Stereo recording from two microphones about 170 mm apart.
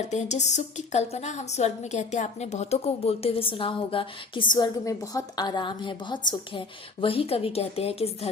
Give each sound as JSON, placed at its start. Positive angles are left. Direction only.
{"t": 0.0, "sound": "a woman's voice", "side_deg": 45}